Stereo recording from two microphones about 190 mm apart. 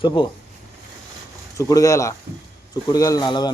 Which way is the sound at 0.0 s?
25° left (ahead or behind).